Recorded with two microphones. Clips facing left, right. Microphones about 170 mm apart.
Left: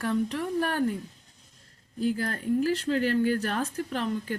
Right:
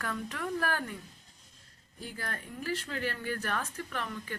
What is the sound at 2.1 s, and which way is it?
Speech, 35° left (ahead or behind).